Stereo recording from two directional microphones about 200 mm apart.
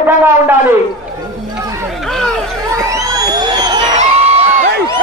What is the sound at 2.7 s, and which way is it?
Crowd, 15° right (ahead or behind).